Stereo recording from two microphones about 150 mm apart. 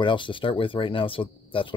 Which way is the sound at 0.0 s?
35° left (ahead or behind).